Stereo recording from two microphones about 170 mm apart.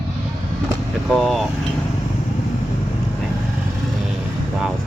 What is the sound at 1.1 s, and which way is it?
Speech, centre (ahead or behind).